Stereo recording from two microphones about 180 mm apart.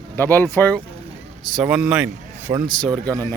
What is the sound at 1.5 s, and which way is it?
Speech, 5° right (ahead or behind).